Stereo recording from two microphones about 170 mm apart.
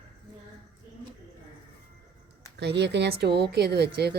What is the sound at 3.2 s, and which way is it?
Speech, 75° right (ahead or behind).